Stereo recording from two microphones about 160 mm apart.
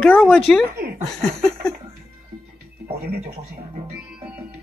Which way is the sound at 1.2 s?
5° left (ahead or behind).